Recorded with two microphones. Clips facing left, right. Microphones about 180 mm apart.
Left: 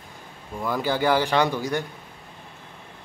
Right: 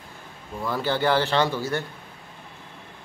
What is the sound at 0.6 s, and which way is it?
A man's voice, 10° left (ahead or behind).